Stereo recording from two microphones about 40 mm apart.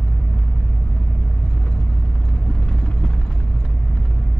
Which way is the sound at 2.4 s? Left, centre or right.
Left.